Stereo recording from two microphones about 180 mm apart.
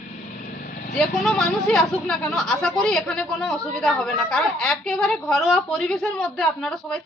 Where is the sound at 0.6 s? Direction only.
55° left (ahead or behind).